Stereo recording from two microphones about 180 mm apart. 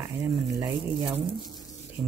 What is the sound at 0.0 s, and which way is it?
Speech, 10° right (ahead or behind).